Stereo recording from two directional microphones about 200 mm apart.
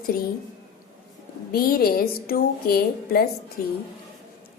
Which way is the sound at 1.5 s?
50° left (ahead or behind).